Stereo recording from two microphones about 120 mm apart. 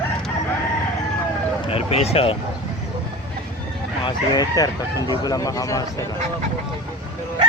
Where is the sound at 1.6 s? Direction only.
55° left (ahead or behind).